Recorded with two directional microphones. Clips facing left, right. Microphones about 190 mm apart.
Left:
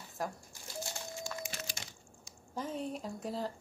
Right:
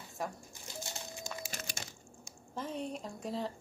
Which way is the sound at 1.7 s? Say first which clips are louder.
Right 2 dB; 45° right (ahead or behind).